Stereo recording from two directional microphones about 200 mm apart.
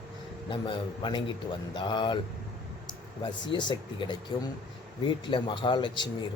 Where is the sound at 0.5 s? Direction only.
25° left (ahead or behind).